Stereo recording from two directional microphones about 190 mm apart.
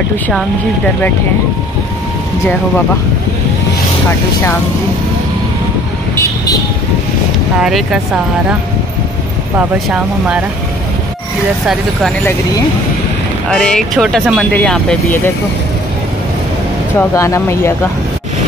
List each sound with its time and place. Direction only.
6.1 s vehicle: 20° left (ahead or behind)
7.5 s speech: 5° right (ahead or behind)
9.6 s speech: 5° right (ahead or behind)
13.5 s speech: 5° left (ahead or behind)
17.1 s speech: 15° left (ahead or behind)